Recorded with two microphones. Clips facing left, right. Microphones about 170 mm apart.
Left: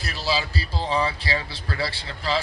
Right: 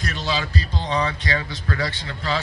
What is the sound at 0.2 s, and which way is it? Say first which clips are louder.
Speech: left 1 dB; 5° left (ahead or behind).